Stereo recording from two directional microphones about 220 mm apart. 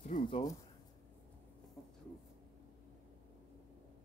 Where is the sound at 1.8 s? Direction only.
Centre (ahead or behind).